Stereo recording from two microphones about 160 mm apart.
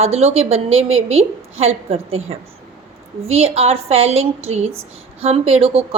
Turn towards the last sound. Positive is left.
turn(degrees=-35)  # may be behind; listen again after turning